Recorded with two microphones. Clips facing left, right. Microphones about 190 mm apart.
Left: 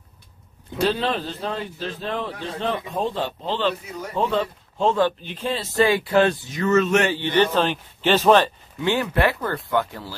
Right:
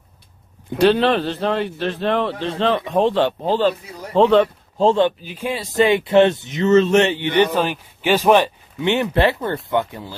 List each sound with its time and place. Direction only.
0.7 s a man's voice: 70° right (ahead or behind)
3.4 s speech: 40° right (ahead or behind)
4.1 s a man's voice: 75° right (ahead or behind)
4.7 s speech: 30° right (ahead or behind)
5.2 s speech: 10° right (ahead or behind)